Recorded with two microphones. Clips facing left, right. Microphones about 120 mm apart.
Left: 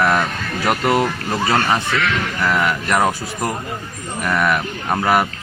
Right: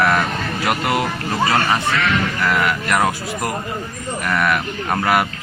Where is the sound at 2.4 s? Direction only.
Centre (ahead or behind).